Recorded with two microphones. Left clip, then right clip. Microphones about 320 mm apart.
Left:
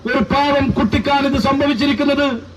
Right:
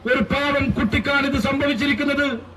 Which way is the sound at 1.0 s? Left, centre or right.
Centre.